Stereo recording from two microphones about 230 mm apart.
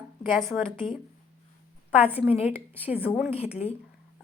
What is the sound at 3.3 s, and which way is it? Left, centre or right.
Speech, left.